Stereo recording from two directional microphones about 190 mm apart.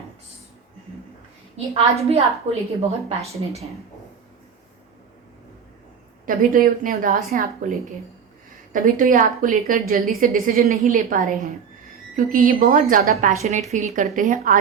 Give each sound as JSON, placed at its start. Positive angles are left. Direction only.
{"t": 1.5, "sound": "a woman's voice", "side_deg": -30}
{"t": 3.3, "sound": "a woman's voice", "side_deg": -35}
{"t": 6.2, "sound": "a woman's voice", "side_deg": -45}
{"t": 8.7, "sound": "a woman's voice", "side_deg": -45}
{"t": 13.4, "sound": "a woman's voice", "side_deg": -35}